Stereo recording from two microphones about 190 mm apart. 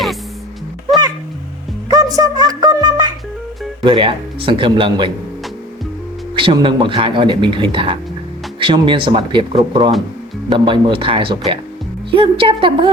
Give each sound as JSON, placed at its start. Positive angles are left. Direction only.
{"t": 1.9, "sound": "a sound", "side_deg": -20}
{"t": 3.8, "sound": "speech", "side_deg": -25}
{"t": 6.3, "sound": "speech", "side_deg": -25}